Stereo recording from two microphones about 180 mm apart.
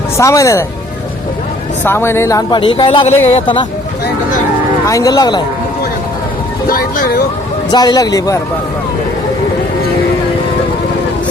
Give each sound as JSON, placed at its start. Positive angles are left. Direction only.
{"t": 0.2, "sound": "speech", "side_deg": 15}
{"t": 1.8, "sound": "speech", "side_deg": 15}
{"t": 4.9, "sound": "speech", "side_deg": 20}
{"t": 6.7, "sound": "speech", "side_deg": 55}
{"t": 7.7, "sound": "speech", "side_deg": 20}